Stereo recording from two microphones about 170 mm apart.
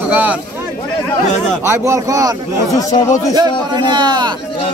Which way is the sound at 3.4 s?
25° right (ahead or behind).